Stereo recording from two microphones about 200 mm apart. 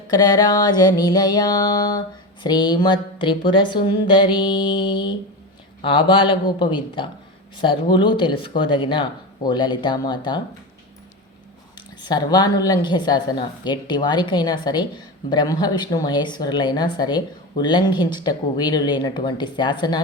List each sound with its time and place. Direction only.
0.1 s a woman's voice: 20° left (ahead or behind)
12.0 s a woman's voice: 20° left (ahead or behind)